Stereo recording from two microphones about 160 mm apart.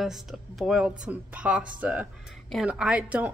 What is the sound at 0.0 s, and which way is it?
A woman's voice, centre (ahead or behind).